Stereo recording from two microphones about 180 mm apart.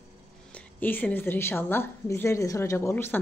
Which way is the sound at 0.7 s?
10° left (ahead or behind).